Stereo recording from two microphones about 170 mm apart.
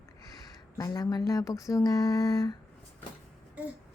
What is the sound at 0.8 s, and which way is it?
A woman's voice, 20° left (ahead or behind).